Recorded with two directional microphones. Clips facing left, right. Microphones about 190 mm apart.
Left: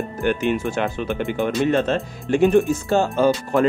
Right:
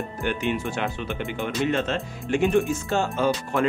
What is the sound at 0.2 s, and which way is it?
Speech, 45° left (ahead or behind).